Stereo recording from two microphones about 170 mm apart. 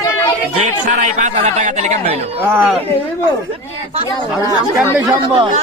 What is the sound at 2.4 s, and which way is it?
Speech, 10° right (ahead or behind).